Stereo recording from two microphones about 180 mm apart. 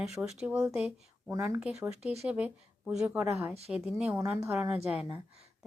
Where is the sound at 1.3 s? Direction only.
15° right (ahead or behind).